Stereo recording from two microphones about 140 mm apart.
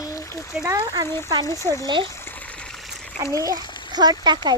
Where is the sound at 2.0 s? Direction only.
20° left (ahead or behind).